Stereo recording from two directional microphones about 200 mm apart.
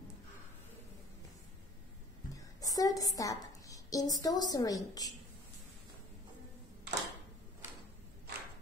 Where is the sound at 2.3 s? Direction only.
15° left (ahead or behind).